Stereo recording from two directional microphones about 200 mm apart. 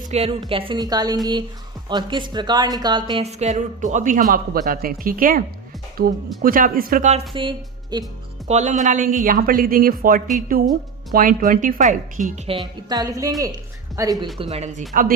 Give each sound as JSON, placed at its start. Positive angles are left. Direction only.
{"t": 0.1, "sound": "a woman's voice", "side_deg": -30}
{"t": 6.4, "sound": "speech", "side_deg": -45}
{"t": 7.3, "sound": "speech", "side_deg": -20}
{"t": 8.4, "sound": "speech", "side_deg": -35}
{"t": 12.5, "sound": "speech", "side_deg": -20}
{"t": 14.3, "sound": "a woman's voice", "side_deg": -30}